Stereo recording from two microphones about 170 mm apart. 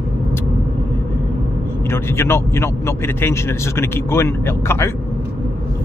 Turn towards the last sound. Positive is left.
turn(degrees=15)  # may be behind; listen again after turning